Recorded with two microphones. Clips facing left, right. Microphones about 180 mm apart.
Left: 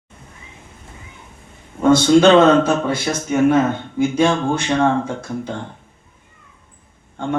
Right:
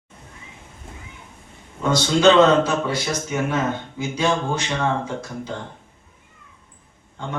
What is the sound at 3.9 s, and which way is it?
Speech, 55° left (ahead or behind).